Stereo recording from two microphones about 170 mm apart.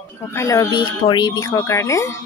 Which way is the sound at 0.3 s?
15° left (ahead or behind).